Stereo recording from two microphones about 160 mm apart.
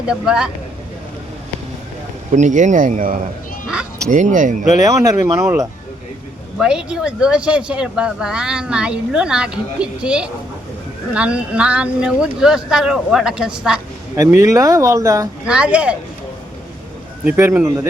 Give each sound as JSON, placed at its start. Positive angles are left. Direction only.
{"t": 0.1, "sound": "speech", "side_deg": -5}
{"t": 2.3, "sound": "speech", "side_deg": -50}
{"t": 4.8, "sound": "speech", "side_deg": -20}
{"t": 6.6, "sound": "speech", "side_deg": -5}
{"t": 14.2, "sound": "speech", "side_deg": -20}
{"t": 15.4, "sound": "speech", "side_deg": -5}
{"t": 17.2, "sound": "speech", "side_deg": -15}